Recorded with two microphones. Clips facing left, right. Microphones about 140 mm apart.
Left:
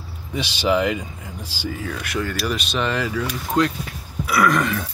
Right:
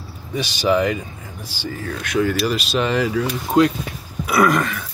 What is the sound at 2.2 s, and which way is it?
Speech, 5° right (ahead or behind).